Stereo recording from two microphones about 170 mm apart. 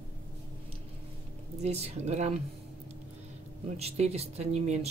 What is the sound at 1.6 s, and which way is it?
Speech, 40° right (ahead or behind).